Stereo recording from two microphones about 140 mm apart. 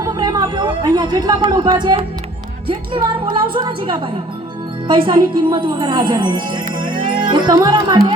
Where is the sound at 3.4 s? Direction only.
35° right (ahead or behind).